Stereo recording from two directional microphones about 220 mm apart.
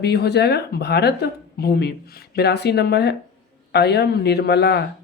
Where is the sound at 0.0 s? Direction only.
50° left (ahead or behind).